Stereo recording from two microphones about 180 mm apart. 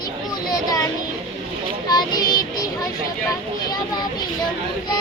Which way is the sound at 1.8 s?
20° left (ahead or behind).